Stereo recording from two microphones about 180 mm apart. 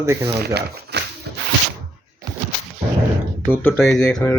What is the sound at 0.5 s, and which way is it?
Speech, 65° right (ahead or behind).